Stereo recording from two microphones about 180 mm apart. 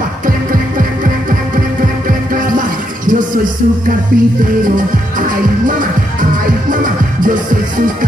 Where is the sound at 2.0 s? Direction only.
50° right (ahead or behind).